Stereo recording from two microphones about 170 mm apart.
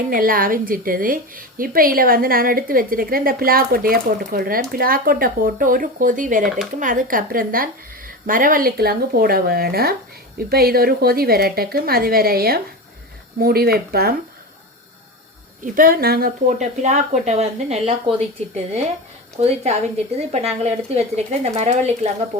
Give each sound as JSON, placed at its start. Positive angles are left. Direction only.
{"t": 0.1, "sound": "a woman's voice", "side_deg": -55}
{"t": 15.6, "sound": "a woman's voice", "side_deg": -55}